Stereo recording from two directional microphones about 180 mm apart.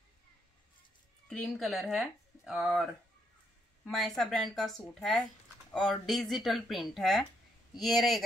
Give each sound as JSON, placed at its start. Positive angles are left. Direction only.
{"t": 1.3, "sound": "speech", "side_deg": 0}